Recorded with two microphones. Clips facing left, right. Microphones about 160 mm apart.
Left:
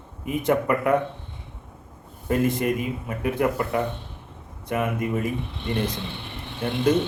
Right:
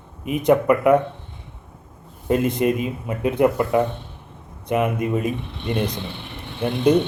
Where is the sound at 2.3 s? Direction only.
20° right (ahead or behind).